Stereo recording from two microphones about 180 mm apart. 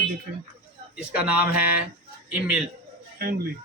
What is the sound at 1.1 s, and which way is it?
Speech, 5° right (ahead or behind).